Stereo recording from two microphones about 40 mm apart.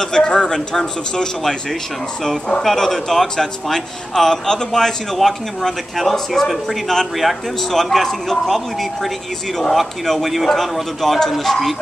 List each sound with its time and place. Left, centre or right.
0.0 s speech: centre
2.6 s a man's voice: centre
9.6 s a man's voice: centre